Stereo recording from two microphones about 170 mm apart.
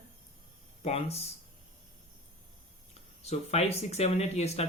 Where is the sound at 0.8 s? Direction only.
40° left (ahead or behind).